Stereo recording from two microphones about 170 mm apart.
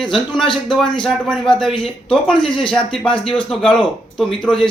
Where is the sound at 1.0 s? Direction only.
5° left (ahead or behind).